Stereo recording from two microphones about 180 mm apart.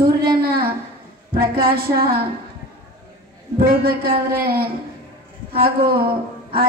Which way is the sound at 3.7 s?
55° right (ahead or behind).